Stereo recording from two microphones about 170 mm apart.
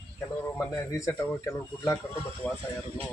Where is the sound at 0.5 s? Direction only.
15° left (ahead or behind).